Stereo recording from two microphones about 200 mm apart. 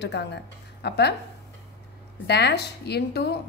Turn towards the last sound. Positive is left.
turn(degrees=55)  # may be behind; listen again after turning